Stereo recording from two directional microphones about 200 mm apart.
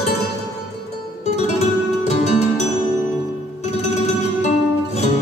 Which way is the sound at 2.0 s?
35° left (ahead or behind).